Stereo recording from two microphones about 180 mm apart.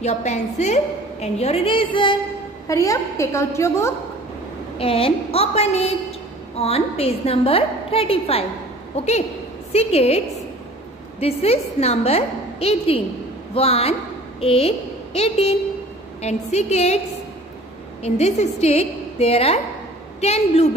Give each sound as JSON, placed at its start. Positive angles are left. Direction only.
{"t": 0.0, "sound": "a woman's voice", "side_deg": 40}
{"t": 4.7, "sound": "a woman's voice", "side_deg": 30}
{"t": 18.0, "sound": "a woman's voice", "side_deg": 35}